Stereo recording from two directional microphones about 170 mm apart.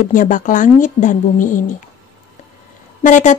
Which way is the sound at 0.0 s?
50° left (ahead or behind).